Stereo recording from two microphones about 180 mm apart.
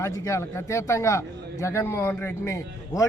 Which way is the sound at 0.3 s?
15° left (ahead or behind).